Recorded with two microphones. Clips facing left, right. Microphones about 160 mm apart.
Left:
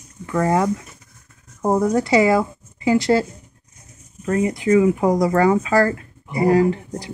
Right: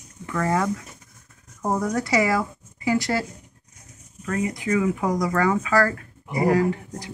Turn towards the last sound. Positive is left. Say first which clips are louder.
# left 5 dB
turn(degrees=30)  # may be behind; listen again after turning